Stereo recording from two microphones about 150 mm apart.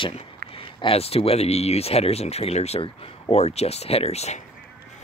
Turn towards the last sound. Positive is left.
turn(degrees=45)  # may be behind; listen again after turning